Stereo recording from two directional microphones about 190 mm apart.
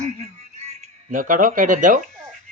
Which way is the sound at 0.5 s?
35° right (ahead or behind).